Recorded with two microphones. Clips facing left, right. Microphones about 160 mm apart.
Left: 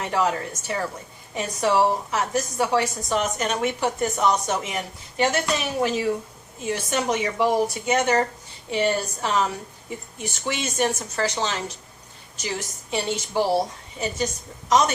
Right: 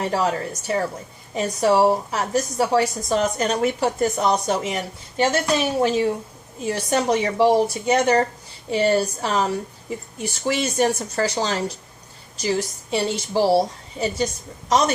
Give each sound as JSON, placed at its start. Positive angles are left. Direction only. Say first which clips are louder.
{"t": 0.0, "sound": "a woman's voice", "louder": "right 2 dB", "side_deg": -35}